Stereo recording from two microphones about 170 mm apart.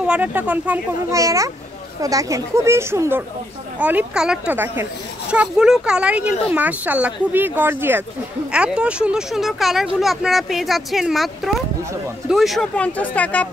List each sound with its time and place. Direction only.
0.0 s a child's voice: 10° right (ahead or behind); by 13.5 s 10° left (ahead or behind)